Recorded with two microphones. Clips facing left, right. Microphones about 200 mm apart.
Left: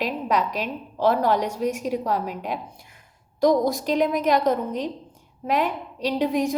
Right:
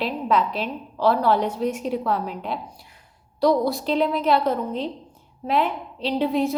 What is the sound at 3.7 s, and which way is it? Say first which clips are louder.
Speech: even; 15° left (ahead or behind).